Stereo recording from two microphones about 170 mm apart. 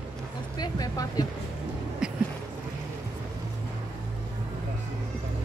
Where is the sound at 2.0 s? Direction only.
5° right (ahead or behind).